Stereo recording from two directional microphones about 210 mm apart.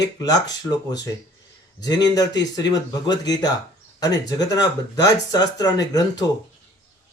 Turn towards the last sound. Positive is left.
turn(degrees=20)  # may be behind; listen again after turning